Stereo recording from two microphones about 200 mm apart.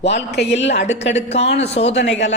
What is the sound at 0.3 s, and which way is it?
Speech, 60° left (ahead or behind).